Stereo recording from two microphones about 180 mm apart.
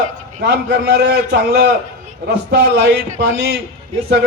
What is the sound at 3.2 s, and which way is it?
Speech, 70° right (ahead or behind).